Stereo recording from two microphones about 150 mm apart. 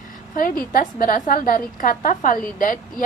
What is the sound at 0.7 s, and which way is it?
A woman's voice, 75° left (ahead or behind).